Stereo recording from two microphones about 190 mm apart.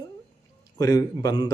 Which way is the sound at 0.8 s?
20° left (ahead or behind).